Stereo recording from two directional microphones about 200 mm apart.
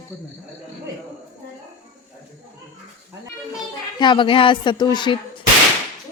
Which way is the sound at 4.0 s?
25° left (ahead or behind).